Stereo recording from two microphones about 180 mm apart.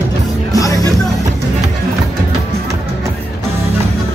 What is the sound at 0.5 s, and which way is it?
Music, 20° left (ahead or behind).